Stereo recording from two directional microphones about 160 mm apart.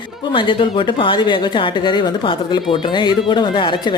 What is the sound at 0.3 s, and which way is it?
Speech, 30° left (ahead or behind).